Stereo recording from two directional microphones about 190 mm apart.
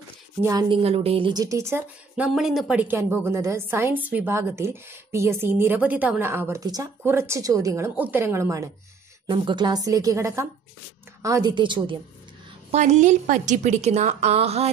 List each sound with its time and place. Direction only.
0.4 s a woman's voice: 20° right (ahead or behind)
0.8 s a woman's voice: 30° right (ahead or behind)
12.7 s a woman's voice: 40° right (ahead or behind)